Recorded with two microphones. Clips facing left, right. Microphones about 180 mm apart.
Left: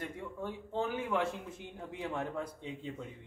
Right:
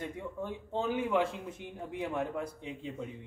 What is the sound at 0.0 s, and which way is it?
A man's voice, 20° right (ahead or behind).